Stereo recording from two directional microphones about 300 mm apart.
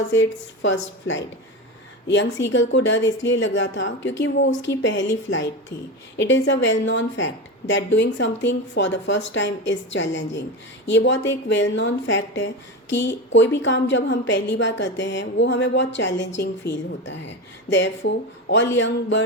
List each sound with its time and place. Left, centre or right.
0.1 s a woman's voice: left